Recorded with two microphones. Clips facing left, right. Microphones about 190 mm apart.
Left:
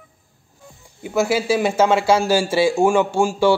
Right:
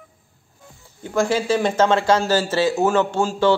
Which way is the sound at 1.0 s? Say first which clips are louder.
Left 1 dB; 10° left (ahead or behind).